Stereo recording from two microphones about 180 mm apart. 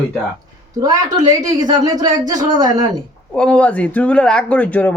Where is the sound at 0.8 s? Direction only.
20° right (ahead or behind).